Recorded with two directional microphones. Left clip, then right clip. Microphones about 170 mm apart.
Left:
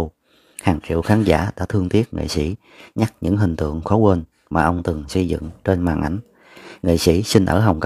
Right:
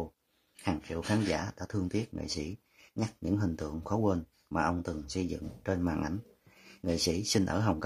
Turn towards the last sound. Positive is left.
turn(degrees=45)  # may be behind; listen again after turning